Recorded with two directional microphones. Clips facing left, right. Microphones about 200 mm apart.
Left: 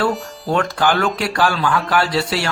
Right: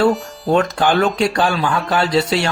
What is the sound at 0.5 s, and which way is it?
Speech, 25° right (ahead or behind).